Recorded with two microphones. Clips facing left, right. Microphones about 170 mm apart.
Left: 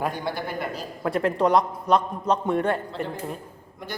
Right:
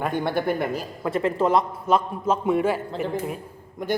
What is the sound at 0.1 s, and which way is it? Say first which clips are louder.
Speech: right 6 dB; 55° right (ahead or behind).